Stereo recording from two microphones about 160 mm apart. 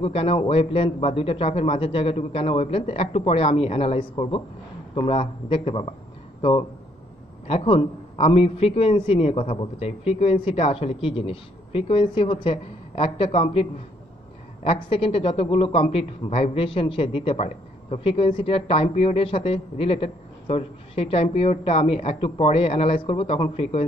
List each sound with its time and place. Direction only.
0.0 s a man's voice: 35° left (ahead or behind)
7.4 s a man's voice: 35° left (ahead or behind)